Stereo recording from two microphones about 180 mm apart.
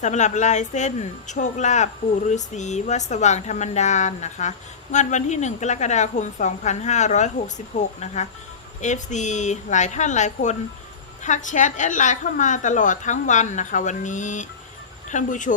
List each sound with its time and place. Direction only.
0.0 s a woman's voice: 40° left (ahead or behind)